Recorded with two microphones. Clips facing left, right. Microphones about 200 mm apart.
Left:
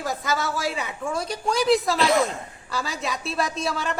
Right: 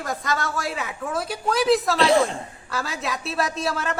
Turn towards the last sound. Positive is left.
turn(degrees=0)  # may be behind; listen again after turning